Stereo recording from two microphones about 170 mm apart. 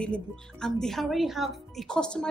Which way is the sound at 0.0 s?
5° left (ahead or behind).